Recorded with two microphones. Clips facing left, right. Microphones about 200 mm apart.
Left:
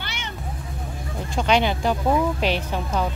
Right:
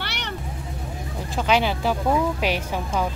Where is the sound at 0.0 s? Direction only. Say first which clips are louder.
Right 2 dB; 70° right (ahead or behind).